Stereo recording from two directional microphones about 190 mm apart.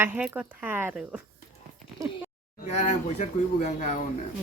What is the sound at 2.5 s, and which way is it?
Speech, 35° left (ahead or behind).